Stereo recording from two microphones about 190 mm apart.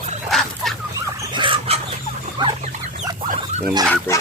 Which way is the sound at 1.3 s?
25° right (ahead or behind).